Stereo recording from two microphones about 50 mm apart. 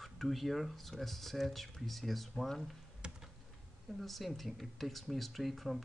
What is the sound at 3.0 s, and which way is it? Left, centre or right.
Computer keyboard, centre.